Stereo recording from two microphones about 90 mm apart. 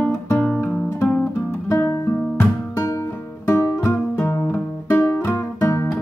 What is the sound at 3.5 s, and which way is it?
Music, 30° left (ahead or behind).